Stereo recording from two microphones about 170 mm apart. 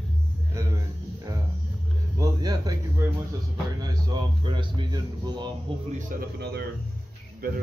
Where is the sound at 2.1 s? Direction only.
20° right (ahead or behind).